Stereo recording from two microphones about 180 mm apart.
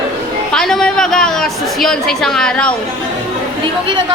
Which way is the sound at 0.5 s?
5° left (ahead or behind).